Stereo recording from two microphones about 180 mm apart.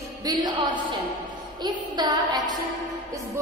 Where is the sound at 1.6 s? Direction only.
20° right (ahead or behind).